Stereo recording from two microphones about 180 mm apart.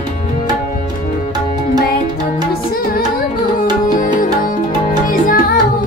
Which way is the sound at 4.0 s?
50° left (ahead or behind).